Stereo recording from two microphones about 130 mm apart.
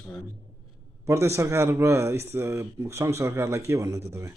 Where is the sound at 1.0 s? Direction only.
20° right (ahead or behind).